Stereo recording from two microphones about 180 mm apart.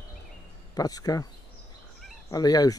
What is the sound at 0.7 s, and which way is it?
Speech, 20° left (ahead or behind).